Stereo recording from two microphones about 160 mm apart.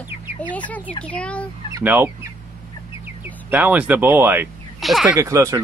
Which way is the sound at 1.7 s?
10° right (ahead or behind).